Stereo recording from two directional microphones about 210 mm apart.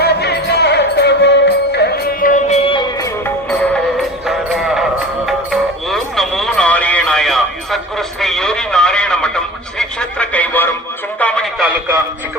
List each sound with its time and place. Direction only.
0.0 s music: 50° left (ahead or behind); by 2.8 s 30° left (ahead or behind)
4.3 s music: centre (ahead or behind)
11.2 s speech: 5° left (ahead or behind)